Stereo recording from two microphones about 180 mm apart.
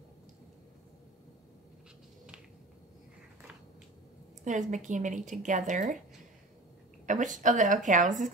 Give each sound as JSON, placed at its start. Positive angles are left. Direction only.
{"t": 4.5, "sound": "a woman's voice", "side_deg": -45}
{"t": 7.1, "sound": "a woman's voice", "side_deg": -45}